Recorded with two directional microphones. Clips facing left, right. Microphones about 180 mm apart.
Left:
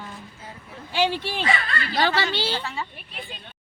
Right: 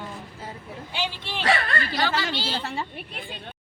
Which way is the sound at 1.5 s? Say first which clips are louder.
Right 4 dB; 65° right (ahead or behind).